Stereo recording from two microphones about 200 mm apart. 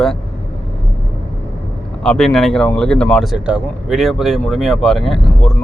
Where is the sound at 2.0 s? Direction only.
Centre (ahead or behind).